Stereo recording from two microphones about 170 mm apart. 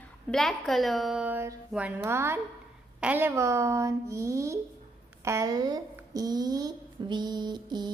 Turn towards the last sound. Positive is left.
turn(degrees=-25)  # may be behind; listen again after turning